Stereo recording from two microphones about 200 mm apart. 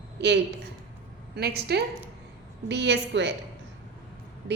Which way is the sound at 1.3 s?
50° right (ahead or behind).